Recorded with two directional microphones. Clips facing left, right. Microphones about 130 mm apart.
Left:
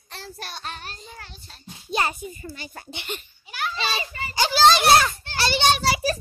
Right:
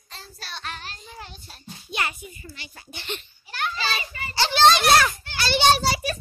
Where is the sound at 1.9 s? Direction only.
35° left (ahead or behind).